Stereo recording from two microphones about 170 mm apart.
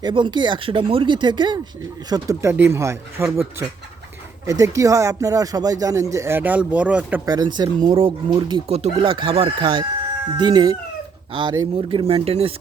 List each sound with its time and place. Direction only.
0.0 s speech: 25° right (ahead or behind)
4.4 s speech: 20° right (ahead or behind)
7.3 s speech: 25° right (ahead or behind)
8.6 s speech: 40° right (ahead or behind)